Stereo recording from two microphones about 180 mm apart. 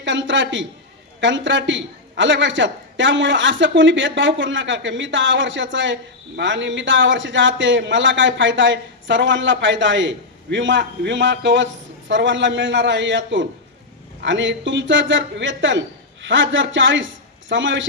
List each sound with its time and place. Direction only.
0.0 s a woman's voice: 90° right